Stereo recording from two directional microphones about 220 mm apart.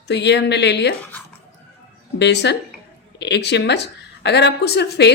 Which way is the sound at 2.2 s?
50° left (ahead or behind).